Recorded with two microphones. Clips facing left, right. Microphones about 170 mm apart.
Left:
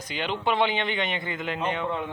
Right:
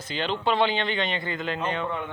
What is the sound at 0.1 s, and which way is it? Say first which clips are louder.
Speech: right 1 dB; 15° left (ahead or behind).